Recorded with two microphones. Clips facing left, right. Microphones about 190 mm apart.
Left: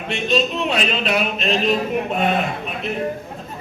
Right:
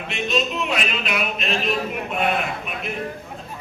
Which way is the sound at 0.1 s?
30° left (ahead or behind).